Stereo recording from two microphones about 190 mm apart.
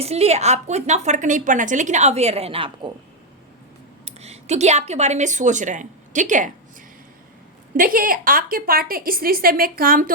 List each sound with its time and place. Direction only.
0.0 s a woman's voice: 35° right (ahead or behind)
4.0 s speech: 35° right (ahead or behind)
7.8 s a woman's voice: 50° right (ahead or behind)